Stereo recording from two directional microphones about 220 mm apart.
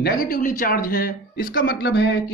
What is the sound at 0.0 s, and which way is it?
Speech, 40° left (ahead or behind).